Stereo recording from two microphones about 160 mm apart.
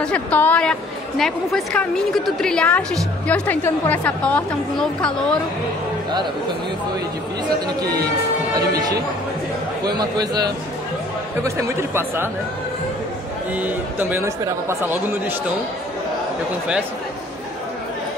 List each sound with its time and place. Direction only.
0.0 s a woman's voice: 10° left (ahead or behind)
9.8 s speech: 25° right (ahead or behind)
13.6 s speech: 10° right (ahead or behind)